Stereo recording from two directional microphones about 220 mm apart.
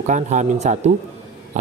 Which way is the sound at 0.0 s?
35° right (ahead or behind).